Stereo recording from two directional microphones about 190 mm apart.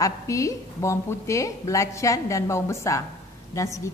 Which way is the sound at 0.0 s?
15° left (ahead or behind).